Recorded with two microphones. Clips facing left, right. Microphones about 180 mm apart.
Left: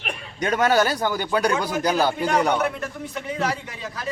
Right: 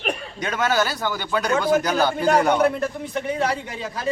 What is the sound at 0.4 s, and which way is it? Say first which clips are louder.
Speech: left 3 dB; 45° left (ahead or behind).